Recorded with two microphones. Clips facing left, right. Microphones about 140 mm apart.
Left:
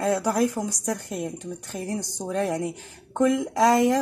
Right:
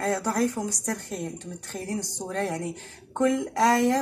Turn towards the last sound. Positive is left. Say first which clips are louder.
# left 2 dB
turn(degrees=10)  # may be behind; listen again after turning